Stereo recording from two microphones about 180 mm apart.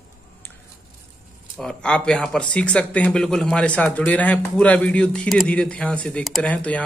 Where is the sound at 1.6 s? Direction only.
5° left (ahead or behind).